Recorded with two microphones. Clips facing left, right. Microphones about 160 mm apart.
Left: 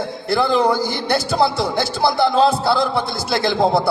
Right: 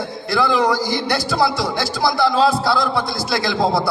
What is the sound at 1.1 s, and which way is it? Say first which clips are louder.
A man's voice: left 3 dB; 25° left (ahead or behind).